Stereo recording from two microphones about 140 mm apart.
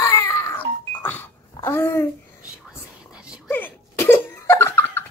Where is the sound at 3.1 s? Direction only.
5° right (ahead or behind).